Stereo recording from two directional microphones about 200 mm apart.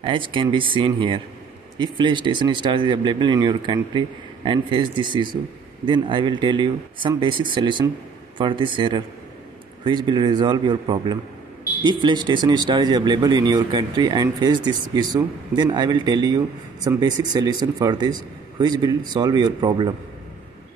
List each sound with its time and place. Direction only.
0.0 s a man's voice: 25° right (ahead or behind)